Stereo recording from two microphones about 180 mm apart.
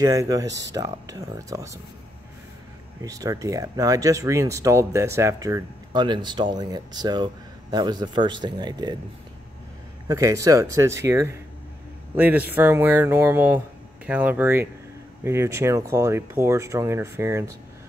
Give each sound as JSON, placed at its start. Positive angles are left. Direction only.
{"t": 0.0, "sound": "speech", "side_deg": -20}
{"t": 3.0, "sound": "speech", "side_deg": -20}
{"t": 10.0, "sound": "speech", "side_deg": -15}